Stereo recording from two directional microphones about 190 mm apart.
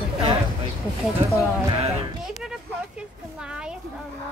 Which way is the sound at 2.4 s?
5° right (ahead or behind).